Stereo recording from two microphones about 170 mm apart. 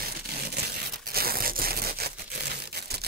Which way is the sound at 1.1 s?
60° right (ahead or behind).